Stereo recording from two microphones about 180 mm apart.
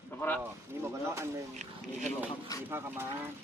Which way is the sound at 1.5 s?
40° right (ahead or behind).